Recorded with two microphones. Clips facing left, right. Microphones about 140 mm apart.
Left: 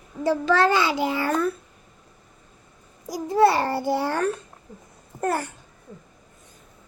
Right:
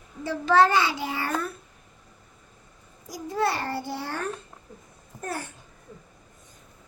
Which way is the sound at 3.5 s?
90° left.